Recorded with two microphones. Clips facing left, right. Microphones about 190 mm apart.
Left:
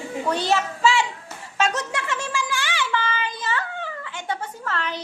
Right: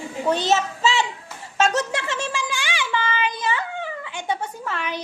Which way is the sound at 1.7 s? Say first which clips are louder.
Right 3 dB; 30° right (ahead or behind).